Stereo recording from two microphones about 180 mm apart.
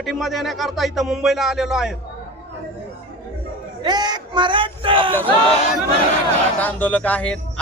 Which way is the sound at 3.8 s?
25° right (ahead or behind).